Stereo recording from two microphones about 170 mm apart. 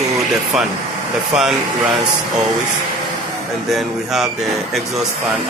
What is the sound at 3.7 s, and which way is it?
Speech, centre (ahead or behind).